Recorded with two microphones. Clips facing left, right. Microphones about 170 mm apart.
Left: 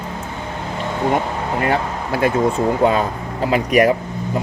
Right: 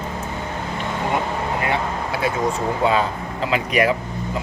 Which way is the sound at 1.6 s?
45° left (ahead or behind).